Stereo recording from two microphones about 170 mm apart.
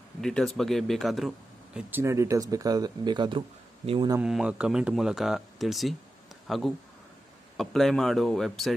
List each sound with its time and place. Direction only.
0.2 s speech: 5° left (ahead or behind); by 4.1 s 30° right (ahead or behind)
4.2 s speech: 5° right (ahead or behind)